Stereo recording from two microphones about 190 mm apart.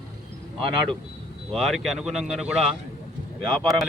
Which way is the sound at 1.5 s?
Centre (ahead or behind).